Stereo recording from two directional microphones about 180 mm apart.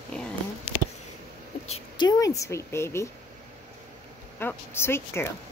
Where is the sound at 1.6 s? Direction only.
30° left (ahead or behind); by 3.0 s 15° left (ahead or behind).